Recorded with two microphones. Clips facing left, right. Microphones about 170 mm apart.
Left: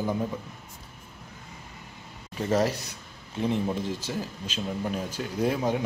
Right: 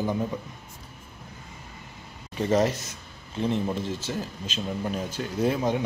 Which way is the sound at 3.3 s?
10° left (ahead or behind).